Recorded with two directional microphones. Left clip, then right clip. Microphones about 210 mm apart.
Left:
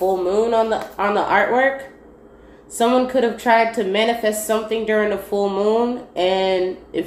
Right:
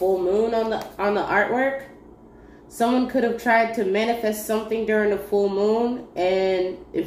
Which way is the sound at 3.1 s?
30° left (ahead or behind).